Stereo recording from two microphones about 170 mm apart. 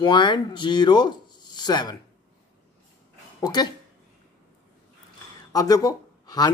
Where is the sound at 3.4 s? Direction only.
25° left (ahead or behind).